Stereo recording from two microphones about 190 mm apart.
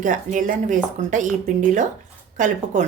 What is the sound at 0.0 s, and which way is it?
A woman's voice, 45° right (ahead or behind).